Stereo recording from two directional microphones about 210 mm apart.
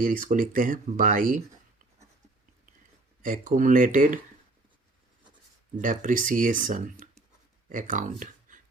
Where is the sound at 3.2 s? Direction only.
40° right (ahead or behind).